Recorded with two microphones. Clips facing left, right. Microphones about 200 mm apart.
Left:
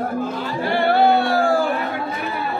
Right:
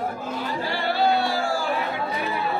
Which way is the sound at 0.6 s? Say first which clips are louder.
Left 8 dB; 55° left (ahead or behind).